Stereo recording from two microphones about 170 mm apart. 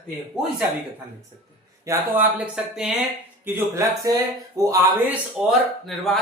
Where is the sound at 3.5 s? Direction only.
15° right (ahead or behind).